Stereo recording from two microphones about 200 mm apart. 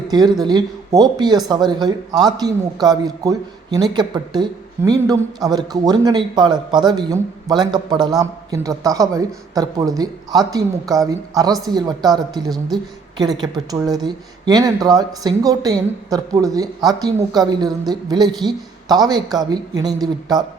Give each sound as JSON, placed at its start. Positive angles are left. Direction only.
{"t": 0.1, "sound": "speech", "side_deg": -20}